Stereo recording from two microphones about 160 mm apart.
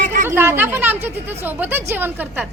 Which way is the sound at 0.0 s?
55° right (ahead or behind).